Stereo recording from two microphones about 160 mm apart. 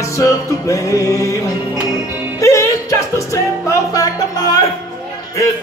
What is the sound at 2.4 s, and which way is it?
Music, 20° left (ahead or behind).